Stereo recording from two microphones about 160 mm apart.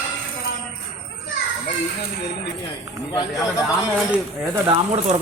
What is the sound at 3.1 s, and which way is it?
Speech, 25° left (ahead or behind).